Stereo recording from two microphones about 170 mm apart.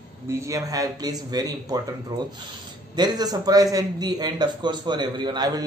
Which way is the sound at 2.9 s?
25° right (ahead or behind).